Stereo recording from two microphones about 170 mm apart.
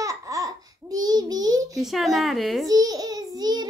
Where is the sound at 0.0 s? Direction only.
20° right (ahead or behind).